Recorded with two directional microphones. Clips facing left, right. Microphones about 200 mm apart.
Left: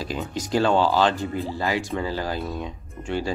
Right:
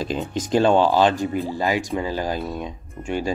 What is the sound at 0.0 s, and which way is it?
Speech, 20° right (ahead or behind).